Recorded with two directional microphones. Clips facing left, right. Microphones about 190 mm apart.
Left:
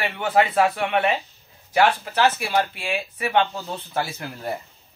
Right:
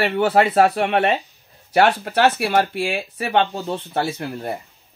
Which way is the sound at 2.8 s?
35° right (ahead or behind).